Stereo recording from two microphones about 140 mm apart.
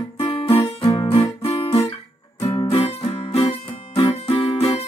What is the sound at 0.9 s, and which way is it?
Guitar, 35° left (ahead or behind).